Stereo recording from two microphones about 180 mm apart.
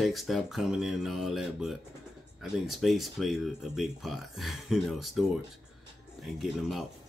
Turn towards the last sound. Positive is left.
turn(degrees=0)  # may be behind; listen again after turning